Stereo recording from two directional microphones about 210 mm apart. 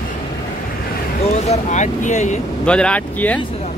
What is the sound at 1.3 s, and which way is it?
Speech, 30° left (ahead or behind).